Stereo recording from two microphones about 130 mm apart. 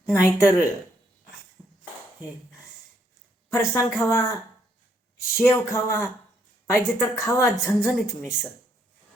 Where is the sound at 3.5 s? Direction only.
25° left (ahead or behind).